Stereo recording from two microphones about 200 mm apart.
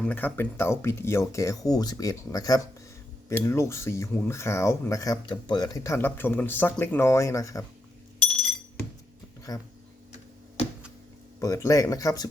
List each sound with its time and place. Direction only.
0.0 s speech: 10° left (ahead or behind)
9.5 s speech: 20° left (ahead or behind)
11.3 s speech: 15° left (ahead or behind)